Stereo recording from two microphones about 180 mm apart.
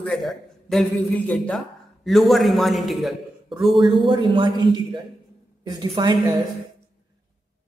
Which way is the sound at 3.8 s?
25° right (ahead or behind).